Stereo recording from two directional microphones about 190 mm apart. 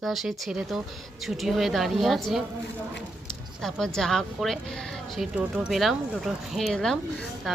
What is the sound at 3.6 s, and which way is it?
Speech, centre (ahead or behind).